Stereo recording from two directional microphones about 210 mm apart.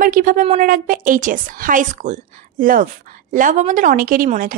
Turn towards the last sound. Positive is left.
turn(degrees=-40)  # may be behind; listen again after turning